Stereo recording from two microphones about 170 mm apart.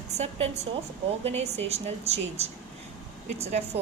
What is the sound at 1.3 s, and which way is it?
Speech, 40° right (ahead or behind).